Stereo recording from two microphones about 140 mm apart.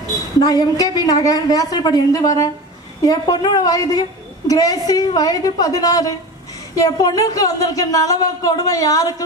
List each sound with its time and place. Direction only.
0.4 s a woman's voice: 25° left (ahead or behind)